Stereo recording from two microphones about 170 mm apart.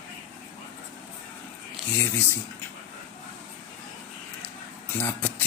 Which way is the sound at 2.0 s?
15° left (ahead or behind).